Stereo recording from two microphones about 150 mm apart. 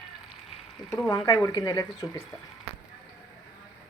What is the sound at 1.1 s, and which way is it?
Speech, 20° left (ahead or behind).